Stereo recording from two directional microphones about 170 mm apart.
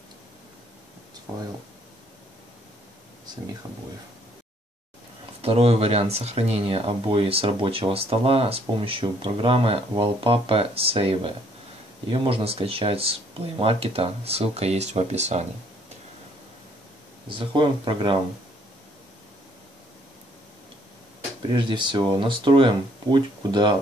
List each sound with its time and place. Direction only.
5.4 s speech: 35° right (ahead or behind)
17.3 s speech: 30° right (ahead or behind)
21.5 s speech: 30° right (ahead or behind)